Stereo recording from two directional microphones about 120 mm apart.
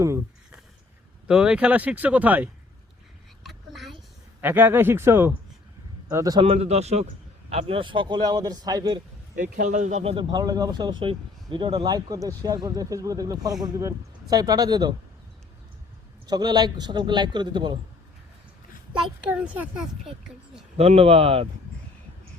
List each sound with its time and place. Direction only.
1.3 s speech: 10° right (ahead or behind)
3.4 s a sound: centre (ahead or behind)
4.4 s a man's voice: 15° right (ahead or behind)
6.4 s speech: 60° right (ahead or behind)
7.5 s speech: 55° right (ahead or behind); by 9.0 s 35° right (ahead or behind)
9.6 s speech: 90° right
10.0 s speech: 55° right (ahead or behind)
10.2 s speech: 35° right (ahead or behind)
16.2 s speech: 35° right (ahead or behind)
19.2 s speech: 10° right (ahead or behind)
20.7 s speech: 60° right (ahead or behind)